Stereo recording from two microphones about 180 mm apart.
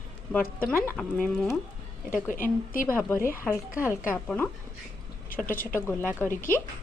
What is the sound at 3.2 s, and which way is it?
A woman's voice, 15° left (ahead or behind).